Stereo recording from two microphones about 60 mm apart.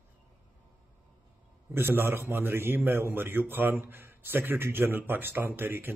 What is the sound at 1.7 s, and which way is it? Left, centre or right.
Speech, right.